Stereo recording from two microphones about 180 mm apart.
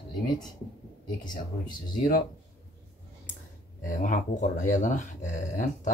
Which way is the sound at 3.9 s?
45° left (ahead or behind).